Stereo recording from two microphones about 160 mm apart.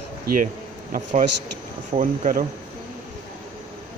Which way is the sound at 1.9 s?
50° right (ahead or behind).